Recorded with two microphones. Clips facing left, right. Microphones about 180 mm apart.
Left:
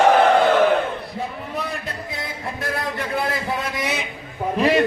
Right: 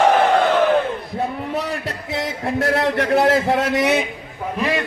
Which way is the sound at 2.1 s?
80° right.